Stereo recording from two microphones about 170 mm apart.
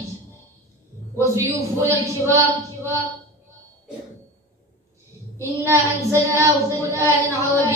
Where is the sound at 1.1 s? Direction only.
15° right (ahead or behind).